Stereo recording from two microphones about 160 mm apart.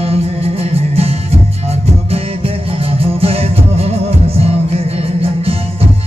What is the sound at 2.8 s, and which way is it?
Music, 40° right (ahead or behind).